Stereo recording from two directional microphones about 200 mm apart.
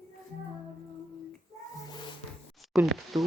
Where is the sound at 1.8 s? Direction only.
20° left (ahead or behind).